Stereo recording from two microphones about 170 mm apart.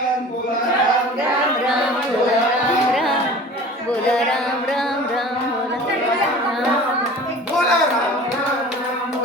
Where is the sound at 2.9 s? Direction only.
Centre (ahead or behind).